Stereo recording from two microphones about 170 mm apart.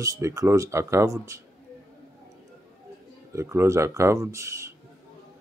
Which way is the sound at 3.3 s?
15° right (ahead or behind).